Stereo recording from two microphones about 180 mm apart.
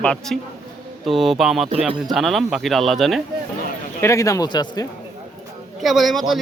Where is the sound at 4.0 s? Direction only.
15° left (ahead or behind).